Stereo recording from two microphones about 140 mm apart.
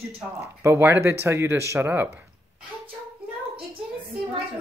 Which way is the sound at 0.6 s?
15° right (ahead or behind).